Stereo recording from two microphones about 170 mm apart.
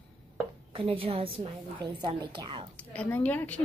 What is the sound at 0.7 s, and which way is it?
A child's voice, 30° right (ahead or behind).